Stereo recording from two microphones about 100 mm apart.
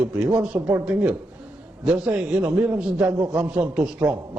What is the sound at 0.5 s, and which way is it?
Speech, 25° right (ahead or behind).